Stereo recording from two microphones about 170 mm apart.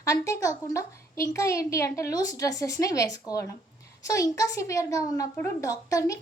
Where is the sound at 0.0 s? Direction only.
20° left (ahead or behind).